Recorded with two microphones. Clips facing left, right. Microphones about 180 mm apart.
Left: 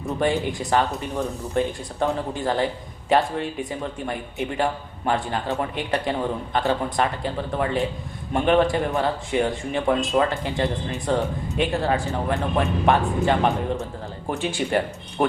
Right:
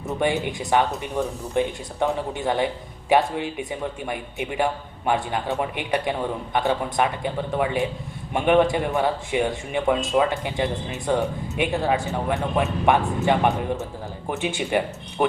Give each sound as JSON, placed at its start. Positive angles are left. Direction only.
{"t": 0.2, "sound": "speech", "side_deg": -10}